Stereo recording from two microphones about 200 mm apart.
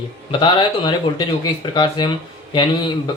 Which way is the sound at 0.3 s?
25° left (ahead or behind).